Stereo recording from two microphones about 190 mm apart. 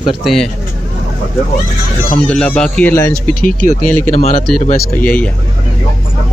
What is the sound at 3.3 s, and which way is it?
Speech, 45° left (ahead or behind).